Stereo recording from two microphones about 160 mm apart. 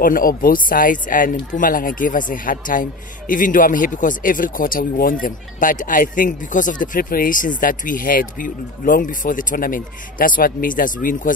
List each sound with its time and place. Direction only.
0.0 s a man's voice: 60° left (ahead or behind)